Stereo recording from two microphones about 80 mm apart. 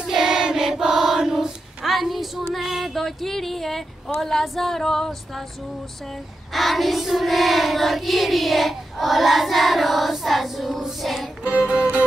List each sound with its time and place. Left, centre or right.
0.0 s child singing: centre
6.5 s child singing: centre
11.4 s music: centre